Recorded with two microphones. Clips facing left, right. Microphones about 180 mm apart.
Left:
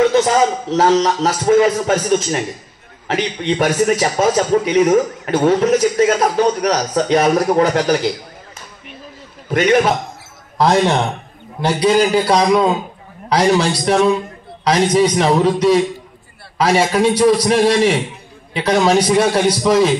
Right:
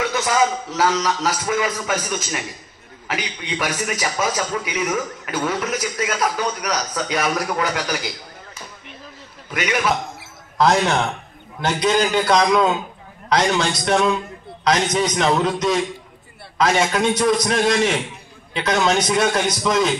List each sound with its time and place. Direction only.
0.0 s a man's voice: 35° left (ahead or behind)
9.5 s a man's voice: 35° left (ahead or behind)